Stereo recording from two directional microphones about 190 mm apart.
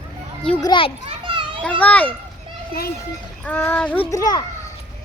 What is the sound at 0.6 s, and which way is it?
Speech, 25° left (ahead or behind).